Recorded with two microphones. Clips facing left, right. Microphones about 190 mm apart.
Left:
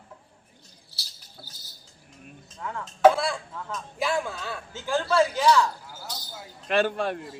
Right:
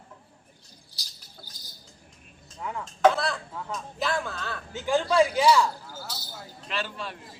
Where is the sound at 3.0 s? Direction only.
10° left (ahead or behind).